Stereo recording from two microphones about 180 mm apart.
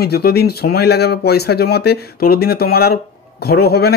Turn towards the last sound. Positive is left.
turn(degrees=60)  # may be behind; listen again after turning